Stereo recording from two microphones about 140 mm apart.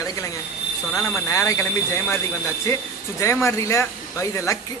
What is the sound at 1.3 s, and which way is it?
Speech, 20° left (ahead or behind).